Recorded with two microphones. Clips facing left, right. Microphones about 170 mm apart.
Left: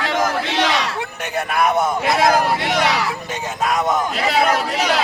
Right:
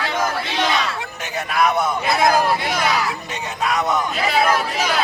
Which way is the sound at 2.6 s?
75° left (ahead or behind).